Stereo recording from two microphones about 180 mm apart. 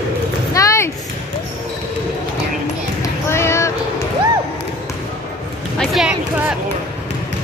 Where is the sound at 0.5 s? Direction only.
15° left (ahead or behind).